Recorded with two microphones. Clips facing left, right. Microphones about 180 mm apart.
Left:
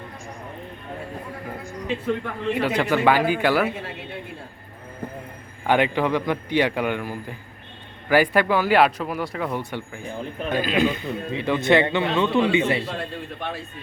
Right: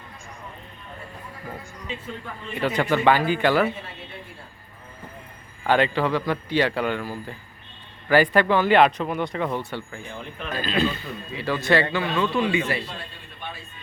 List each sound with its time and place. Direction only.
2.0 s a man's voice: 75° left (ahead or behind)
2.6 s speech: 10° left (ahead or behind)
5.6 s a man's voice: 15° left (ahead or behind)